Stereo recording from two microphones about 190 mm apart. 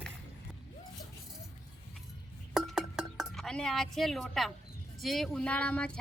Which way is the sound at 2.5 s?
Centre (ahead or behind).